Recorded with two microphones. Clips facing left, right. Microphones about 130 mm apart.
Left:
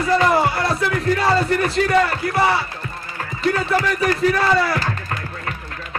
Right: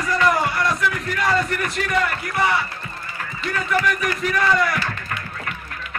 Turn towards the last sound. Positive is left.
turn(degrees=35)  # may be behind; listen again after turning